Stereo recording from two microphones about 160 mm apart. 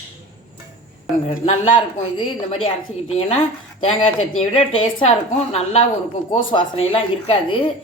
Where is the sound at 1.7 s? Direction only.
30° left (ahead or behind).